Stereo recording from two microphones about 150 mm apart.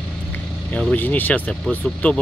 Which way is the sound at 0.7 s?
10° left (ahead or behind).